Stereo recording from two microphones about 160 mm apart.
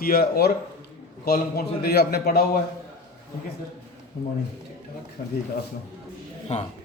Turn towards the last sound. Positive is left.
turn(degrees=45)  # may be behind; listen again after turning